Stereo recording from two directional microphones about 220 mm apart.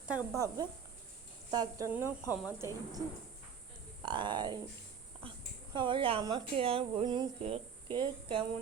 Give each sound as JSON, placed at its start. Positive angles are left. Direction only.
{"t": 0.1, "sound": "speech", "side_deg": -10}
{"t": 4.0, "sound": "speech", "side_deg": -20}
{"t": 5.7, "sound": "speech", "side_deg": -20}